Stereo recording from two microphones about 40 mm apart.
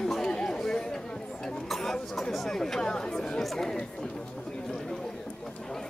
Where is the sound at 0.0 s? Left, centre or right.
Centre.